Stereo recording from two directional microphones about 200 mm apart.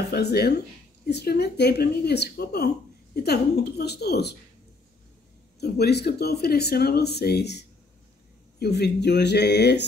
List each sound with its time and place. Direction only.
0.1 s speech: 55° left (ahead or behind)
5.6 s speech: 55° left (ahead or behind)